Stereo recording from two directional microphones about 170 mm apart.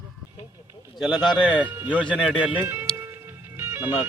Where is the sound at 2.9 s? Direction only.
15° right (ahead or behind).